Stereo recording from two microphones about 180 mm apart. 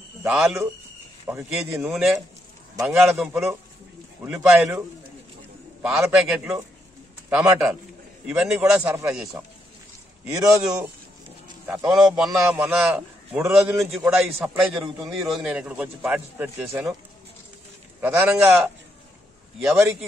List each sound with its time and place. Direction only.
0.3 s a man's voice: centre (ahead or behind)
1.2 s a man's voice: 15° right (ahead or behind)
1.9 s a man's voice: centre (ahead or behind)
5.8 s a man's voice: 5° right (ahead or behind)
10.3 s a man's voice: 15° right (ahead or behind)
11.6 s speech: 15° right (ahead or behind)
12.0 s a man's voice: 5° right (ahead or behind)
18.0 s a man's voice: 10° right (ahead or behind)
19.7 s a man's voice: 15° right (ahead or behind)